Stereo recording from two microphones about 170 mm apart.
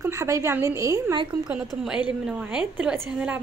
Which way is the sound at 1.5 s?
5° right (ahead or behind).